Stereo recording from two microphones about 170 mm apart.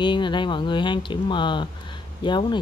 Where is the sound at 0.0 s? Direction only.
30° left (ahead or behind).